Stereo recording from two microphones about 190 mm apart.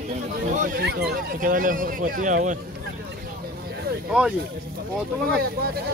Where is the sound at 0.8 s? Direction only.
55° right (ahead or behind).